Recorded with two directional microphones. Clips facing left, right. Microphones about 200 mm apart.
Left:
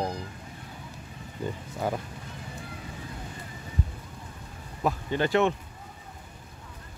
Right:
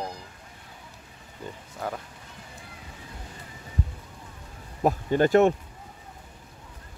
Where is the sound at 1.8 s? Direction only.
5° left (ahead or behind).